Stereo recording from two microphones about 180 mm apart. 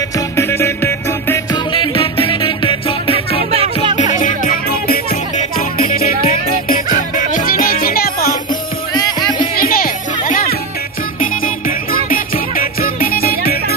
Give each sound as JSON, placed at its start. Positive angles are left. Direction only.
{"t": 0.4, "sound": "music", "side_deg": 15}
{"t": 1.7, "sound": "music", "side_deg": 30}
{"t": 3.5, "sound": "music", "side_deg": -35}
{"t": 4.2, "sound": "music", "side_deg": 45}
{"t": 8.9, "sound": "music", "side_deg": 25}
{"t": 9.6, "sound": "children playing", "side_deg": 50}
{"t": 11.1, "sound": "music", "side_deg": 50}